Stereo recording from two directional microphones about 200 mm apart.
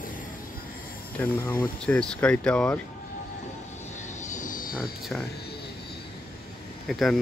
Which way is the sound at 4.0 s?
40° left (ahead or behind).